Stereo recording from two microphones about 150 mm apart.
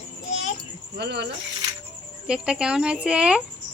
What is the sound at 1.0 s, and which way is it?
Speech, 90° right.